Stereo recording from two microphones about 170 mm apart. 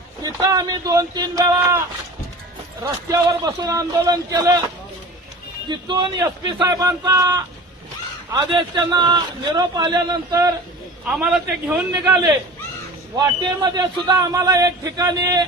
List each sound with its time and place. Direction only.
0.2 s a man's voice: 25° right (ahead or behind)
3.1 s a man's voice: 20° right (ahead or behind)
5.6 s a man's voice: 25° right (ahead or behind)
11.1 s a man's voice: 5° right (ahead or behind); by 15.4 s 25° right (ahead or behind)